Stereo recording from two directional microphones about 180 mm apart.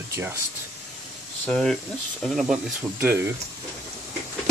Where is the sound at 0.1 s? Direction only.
15° right (ahead or behind).